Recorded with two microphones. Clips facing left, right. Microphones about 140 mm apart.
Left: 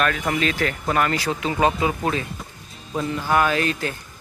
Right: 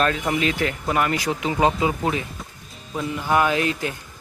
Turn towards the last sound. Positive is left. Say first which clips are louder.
# even
turn(degrees=-15)  # may be behind; listen again after turning